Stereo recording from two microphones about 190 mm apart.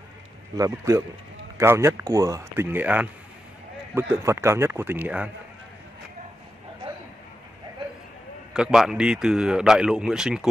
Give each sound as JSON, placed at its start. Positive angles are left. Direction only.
{"t": 0.6, "sound": "speech", "side_deg": -15}
{"t": 8.5, "sound": "speech", "side_deg": 0}